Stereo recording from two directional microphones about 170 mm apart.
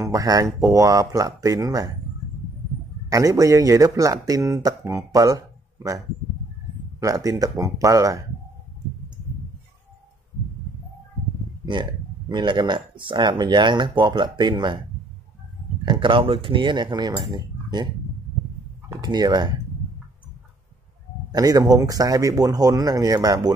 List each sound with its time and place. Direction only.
0.0 s speech: 20° right (ahead or behind)
3.1 s speech: 20° right (ahead or behind)
7.0 s speech: 20° right (ahead or behind)
11.6 s speech: 25° right (ahead or behind)
15.8 s speech: 30° right (ahead or behind)
18.9 s speech: 25° right (ahead or behind)
21.3 s speech: 20° right (ahead or behind)